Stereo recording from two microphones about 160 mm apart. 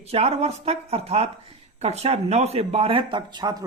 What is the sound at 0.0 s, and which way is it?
Speech, 40° right (ahead or behind).